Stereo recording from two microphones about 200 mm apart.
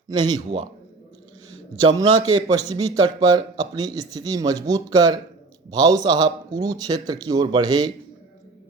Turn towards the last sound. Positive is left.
turn(degrees=-20)  # may be behind; listen again after turning